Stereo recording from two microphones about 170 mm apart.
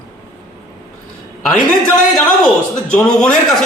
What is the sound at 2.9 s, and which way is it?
Speech, 5° left (ahead or behind).